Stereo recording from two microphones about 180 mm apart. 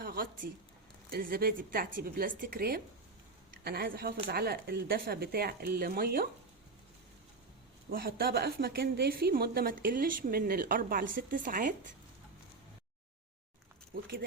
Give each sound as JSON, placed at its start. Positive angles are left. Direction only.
{"t": 0.0, "sound": "a woman's voice", "side_deg": -55}
{"t": 7.9, "sound": "a woman's voice", "side_deg": -55}
{"t": 13.9, "sound": "a woman's voice", "side_deg": -55}